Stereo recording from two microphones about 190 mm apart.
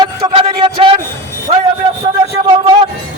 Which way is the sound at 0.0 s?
30° right (ahead or behind).